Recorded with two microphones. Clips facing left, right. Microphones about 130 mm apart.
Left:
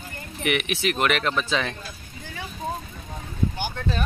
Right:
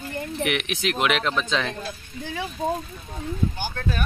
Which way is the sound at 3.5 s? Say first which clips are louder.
Even; 20° left (ahead or behind).